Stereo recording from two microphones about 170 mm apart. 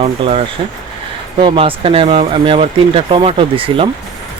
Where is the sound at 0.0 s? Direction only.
35° right (ahead or behind).